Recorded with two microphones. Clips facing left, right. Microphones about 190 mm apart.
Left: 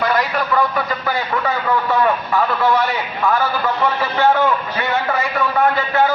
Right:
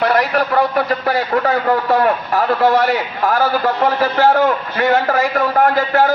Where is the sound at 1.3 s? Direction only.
45° right (ahead or behind).